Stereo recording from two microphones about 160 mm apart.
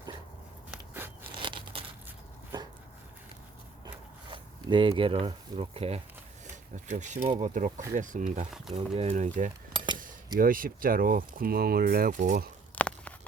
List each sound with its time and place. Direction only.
0.7 s biting: 15° right (ahead or behind)
1.3 s crushing: 30° right (ahead or behind)
3.8 s zipper: 30° right (ahead or behind)
6.9 s speech: 50° right (ahead or behind)
9.7 s a sound: 30° right (ahead or behind)
10.3 s speech: 60° right (ahead or behind)
12.7 s a sound: 10° left (ahead or behind)